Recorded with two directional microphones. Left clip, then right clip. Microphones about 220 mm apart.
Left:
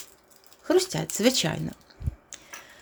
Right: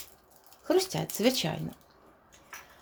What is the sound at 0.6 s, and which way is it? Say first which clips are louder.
Speech: left 4 dB; 15° left (ahead or behind).